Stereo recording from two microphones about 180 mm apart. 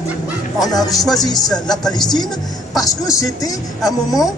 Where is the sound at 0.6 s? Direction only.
Centre (ahead or behind).